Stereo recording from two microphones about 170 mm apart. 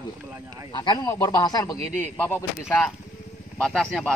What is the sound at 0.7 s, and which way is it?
A man's voice, 25° left (ahead or behind).